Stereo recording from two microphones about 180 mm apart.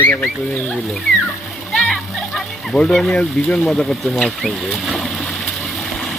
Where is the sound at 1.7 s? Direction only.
5° left (ahead or behind).